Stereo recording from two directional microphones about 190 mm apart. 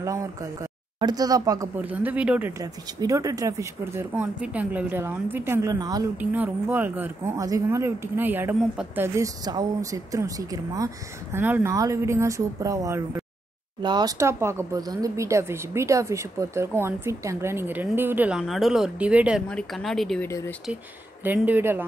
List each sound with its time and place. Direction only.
0.0 s speech: 15° right (ahead or behind)
2.6 s speech: 20° right (ahead or behind)
6.1 s speech: 10° right (ahead or behind)
20.2 s speech: 15° left (ahead or behind)
21.2 s speech: 10° right (ahead or behind)